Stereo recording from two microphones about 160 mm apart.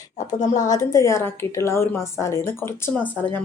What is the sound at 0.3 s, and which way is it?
Speech, 50° left (ahead or behind).